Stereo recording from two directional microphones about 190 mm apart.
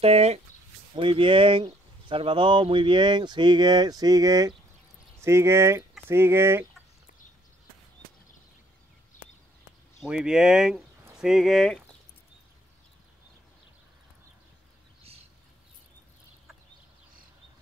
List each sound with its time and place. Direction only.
0.0 s speech: 35° right (ahead or behind); by 6.6 s 15° right (ahead or behind)
10.0 s speech: 5° right (ahead or behind)